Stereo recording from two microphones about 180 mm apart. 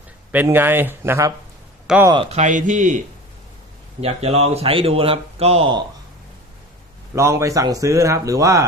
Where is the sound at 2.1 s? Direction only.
35° right (ahead or behind).